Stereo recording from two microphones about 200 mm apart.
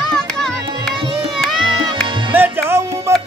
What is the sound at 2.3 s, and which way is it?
Music, 10° right (ahead or behind).